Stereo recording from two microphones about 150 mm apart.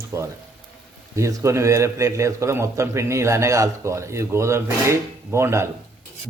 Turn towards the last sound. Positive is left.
turn(degrees=-15)  # may be behind; listen again after turning